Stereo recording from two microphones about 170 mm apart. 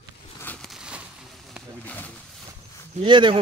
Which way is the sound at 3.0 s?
30° right (ahead or behind).